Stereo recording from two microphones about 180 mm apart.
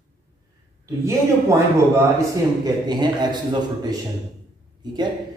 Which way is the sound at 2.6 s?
25° right (ahead or behind).